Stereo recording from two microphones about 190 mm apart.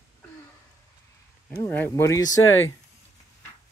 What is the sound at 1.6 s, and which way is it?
Child singing, 10° left (ahead or behind).